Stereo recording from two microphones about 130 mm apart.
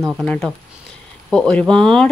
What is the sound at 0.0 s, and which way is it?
Speech, centre (ahead or behind).